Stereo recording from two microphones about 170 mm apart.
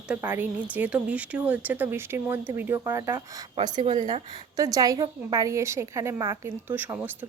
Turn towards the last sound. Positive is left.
turn(degrees=-15)  # may be behind; listen again after turning